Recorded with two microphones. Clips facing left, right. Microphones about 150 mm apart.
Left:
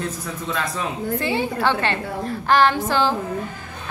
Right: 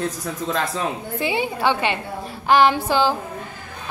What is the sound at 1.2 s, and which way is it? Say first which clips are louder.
A woman's voice: right 2 dB; 15° right (ahead or behind).